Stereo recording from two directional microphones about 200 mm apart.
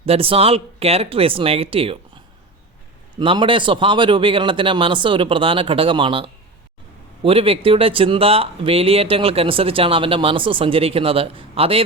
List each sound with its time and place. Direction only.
0.0 s speech: 30° right (ahead or behind)